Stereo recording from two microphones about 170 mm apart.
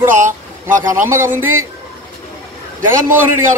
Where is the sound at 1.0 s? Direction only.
15° right (ahead or behind).